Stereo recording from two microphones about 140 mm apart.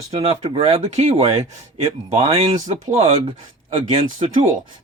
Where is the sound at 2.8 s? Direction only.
60° right (ahead or behind).